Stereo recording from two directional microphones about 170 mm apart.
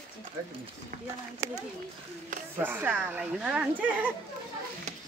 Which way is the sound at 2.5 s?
10° right (ahead or behind).